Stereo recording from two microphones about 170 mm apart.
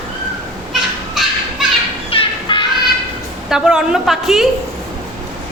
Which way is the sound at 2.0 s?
30° left (ahead or behind).